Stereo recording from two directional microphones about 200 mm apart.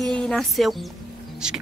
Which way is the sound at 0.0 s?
5° left (ahead or behind).